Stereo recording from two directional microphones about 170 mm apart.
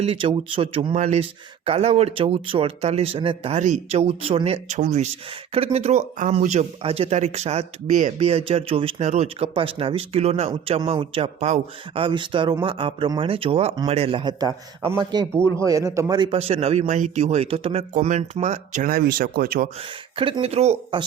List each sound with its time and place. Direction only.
0.0 s speech: 35° right (ahead or behind)
0.9 s speech: 45° right (ahead or behind); by 19.6 s 60° right (ahead or behind)
20.1 s speech: 30° right (ahead or behind)